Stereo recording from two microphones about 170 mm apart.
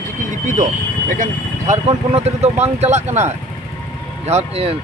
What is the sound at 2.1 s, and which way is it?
Speech, 40° right (ahead or behind).